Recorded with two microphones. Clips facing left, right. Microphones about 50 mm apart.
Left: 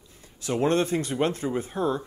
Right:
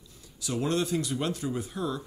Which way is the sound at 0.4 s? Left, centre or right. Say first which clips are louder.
Left 5 dB; left.